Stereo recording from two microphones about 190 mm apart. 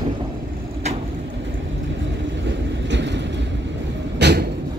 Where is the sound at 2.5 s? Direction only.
70° right (ahead or behind).